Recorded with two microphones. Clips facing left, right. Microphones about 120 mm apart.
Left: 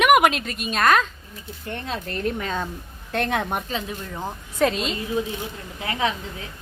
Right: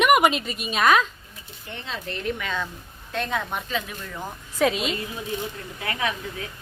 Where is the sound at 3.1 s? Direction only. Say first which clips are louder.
Left 4 dB; 65° left (ahead or behind).